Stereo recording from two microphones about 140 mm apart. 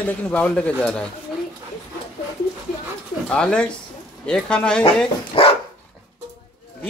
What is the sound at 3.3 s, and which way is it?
Speech, 5° left (ahead or behind).